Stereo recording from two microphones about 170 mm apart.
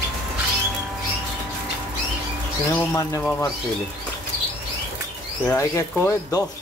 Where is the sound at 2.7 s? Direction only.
20° left (ahead or behind).